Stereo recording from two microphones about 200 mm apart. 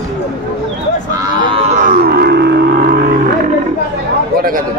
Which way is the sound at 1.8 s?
50° right (ahead or behind).